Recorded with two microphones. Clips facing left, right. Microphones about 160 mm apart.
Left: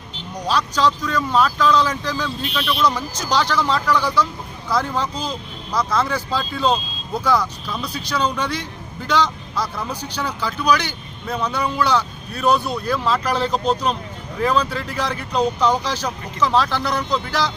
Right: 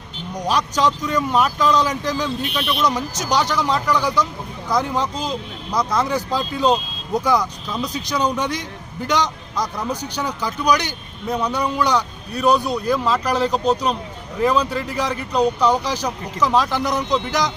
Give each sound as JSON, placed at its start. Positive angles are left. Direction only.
{"t": 0.4, "sound": "speech", "side_deg": -15}